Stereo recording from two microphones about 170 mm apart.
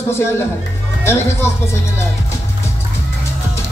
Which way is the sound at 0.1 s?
15° left (ahead or behind).